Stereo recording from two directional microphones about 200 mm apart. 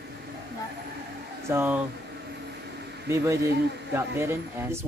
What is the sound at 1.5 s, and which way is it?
Speech, 10° right (ahead or behind).